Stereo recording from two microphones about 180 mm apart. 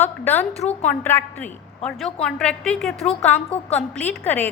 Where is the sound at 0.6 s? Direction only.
10° left (ahead or behind).